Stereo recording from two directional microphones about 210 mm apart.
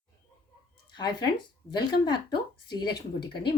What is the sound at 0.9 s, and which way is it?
A woman's voice, 20° left (ahead or behind).